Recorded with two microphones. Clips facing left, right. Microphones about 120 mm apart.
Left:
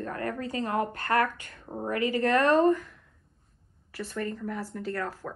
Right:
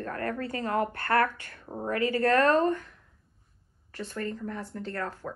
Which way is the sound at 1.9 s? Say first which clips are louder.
Right 1 dB; 20° left (ahead or behind).